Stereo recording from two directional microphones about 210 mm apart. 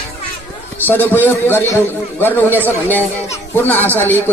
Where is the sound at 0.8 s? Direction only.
10° left (ahead or behind).